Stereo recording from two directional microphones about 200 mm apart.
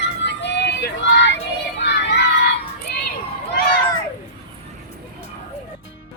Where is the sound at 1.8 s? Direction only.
55° left (ahead or behind).